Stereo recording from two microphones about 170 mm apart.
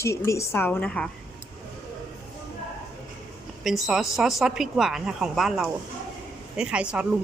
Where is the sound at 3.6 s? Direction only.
Centre (ahead or behind).